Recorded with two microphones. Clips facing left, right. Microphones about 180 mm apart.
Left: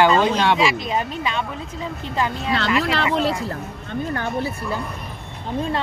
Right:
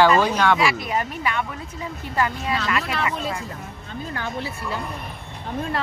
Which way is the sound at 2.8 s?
90° left.